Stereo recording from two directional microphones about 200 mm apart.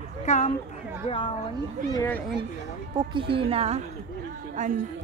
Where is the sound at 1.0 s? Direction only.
25° left (ahead or behind).